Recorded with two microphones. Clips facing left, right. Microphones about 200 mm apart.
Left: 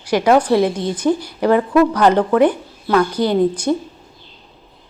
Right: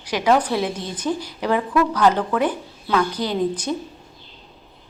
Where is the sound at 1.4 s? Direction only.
55° left (ahead or behind).